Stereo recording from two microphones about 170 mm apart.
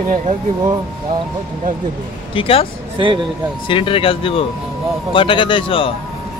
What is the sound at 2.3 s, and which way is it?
Speech, 35° left (ahead or behind).